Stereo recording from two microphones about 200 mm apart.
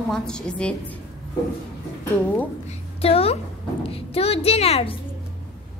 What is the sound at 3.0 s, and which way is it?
A child's voice, 30° left (ahead or behind).